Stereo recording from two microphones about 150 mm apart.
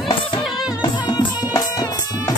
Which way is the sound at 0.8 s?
30° left (ahead or behind).